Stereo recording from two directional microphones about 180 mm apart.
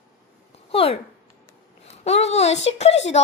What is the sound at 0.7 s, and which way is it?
A woman's voice, 35° left (ahead or behind).